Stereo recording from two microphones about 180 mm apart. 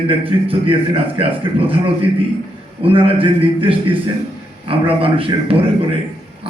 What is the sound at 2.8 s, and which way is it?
A man's voice, 30° right (ahead or behind).